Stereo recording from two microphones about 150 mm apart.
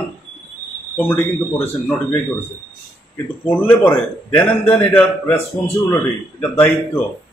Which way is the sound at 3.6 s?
15° left (ahead or behind).